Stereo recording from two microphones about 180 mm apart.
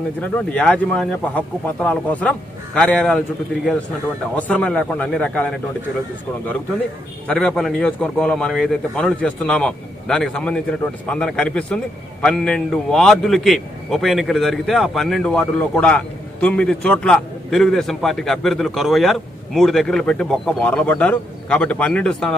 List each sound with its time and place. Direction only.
0.2 s speech: 5° left (ahead or behind)
4.4 s speech: 5° left (ahead or behind)
7.2 s a man's voice: 5° left (ahead or behind)